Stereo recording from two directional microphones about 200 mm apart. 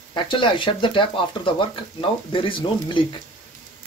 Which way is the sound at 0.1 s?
25° left (ahead or behind).